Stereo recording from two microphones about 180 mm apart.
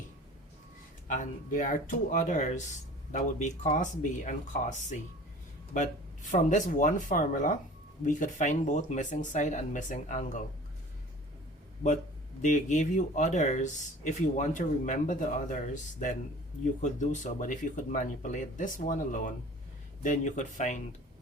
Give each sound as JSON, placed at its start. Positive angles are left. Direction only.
{"t": 1.0, "sound": "speech", "side_deg": 45}
{"t": 12.4, "sound": "speech", "side_deg": 45}